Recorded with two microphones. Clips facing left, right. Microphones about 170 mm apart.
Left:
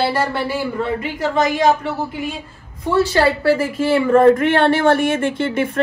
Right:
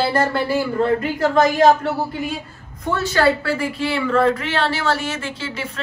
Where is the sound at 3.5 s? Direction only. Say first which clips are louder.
Left 6 dB; 45° left (ahead or behind).